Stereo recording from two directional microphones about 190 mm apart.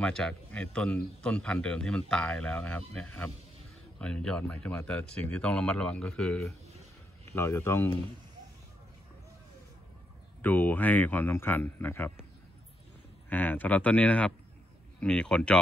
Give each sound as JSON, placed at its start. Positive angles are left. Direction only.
{"t": 0.0, "sound": "speech", "side_deg": 5}
{"t": 7.3, "sound": "speech", "side_deg": 15}
{"t": 10.4, "sound": "speech", "side_deg": 10}
{"t": 13.3, "sound": "speech", "side_deg": 10}